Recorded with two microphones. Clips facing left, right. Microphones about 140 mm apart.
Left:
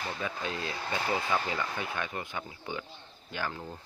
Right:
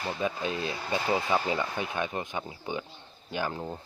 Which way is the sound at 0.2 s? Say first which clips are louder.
Right 5 dB; 20° right (ahead or behind).